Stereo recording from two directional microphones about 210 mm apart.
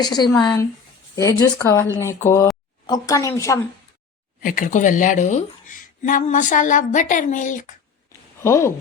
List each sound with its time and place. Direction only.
0.0 s a woman's voice: 20° left (ahead or behind)
4.4 s speech: 40° left (ahead or behind)
8.4 s speech: 10° left (ahead or behind)